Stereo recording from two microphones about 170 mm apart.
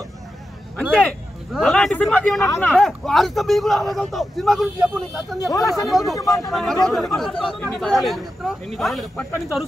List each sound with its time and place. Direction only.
0.7 s a man's voice: 5° left (ahead or behind)
2.4 s speech: 15° left (ahead or behind)
2.7 s speech: centre (ahead or behind)
6.1 s speech: 20° left (ahead or behind)
6.5 s speech: centre (ahead or behind)